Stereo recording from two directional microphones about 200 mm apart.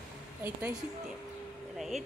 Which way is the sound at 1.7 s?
Centre (ahead or behind).